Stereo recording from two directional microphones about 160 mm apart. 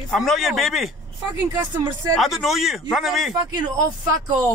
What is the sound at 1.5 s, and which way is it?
Speech, 25° right (ahead or behind).